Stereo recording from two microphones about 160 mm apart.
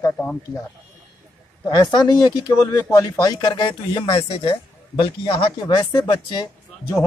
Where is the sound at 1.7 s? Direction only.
30° left (ahead or behind).